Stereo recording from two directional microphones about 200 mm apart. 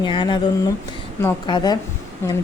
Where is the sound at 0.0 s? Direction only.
25° left (ahead or behind).